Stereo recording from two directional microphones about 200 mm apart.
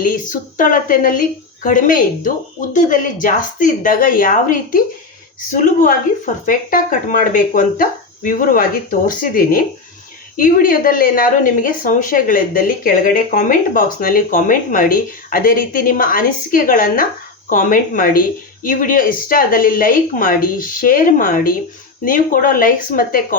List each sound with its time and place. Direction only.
0.0 s a woman's voice: 40° left (ahead or behind)